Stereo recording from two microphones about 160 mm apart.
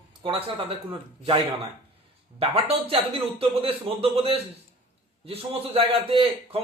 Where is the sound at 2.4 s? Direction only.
35° right (ahead or behind).